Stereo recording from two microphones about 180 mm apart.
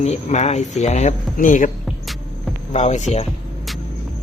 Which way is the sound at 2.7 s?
40° left (ahead or behind).